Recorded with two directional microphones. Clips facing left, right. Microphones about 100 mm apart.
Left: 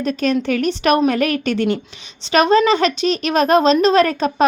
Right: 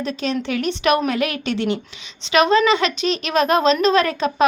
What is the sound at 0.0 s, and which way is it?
A woman's voice, 50° left (ahead or behind).